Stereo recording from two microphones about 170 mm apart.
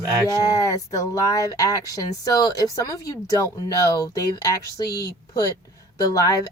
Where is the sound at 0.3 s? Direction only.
20° left (ahead or behind).